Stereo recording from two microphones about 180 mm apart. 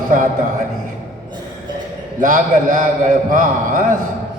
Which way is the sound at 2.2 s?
45° right (ahead or behind).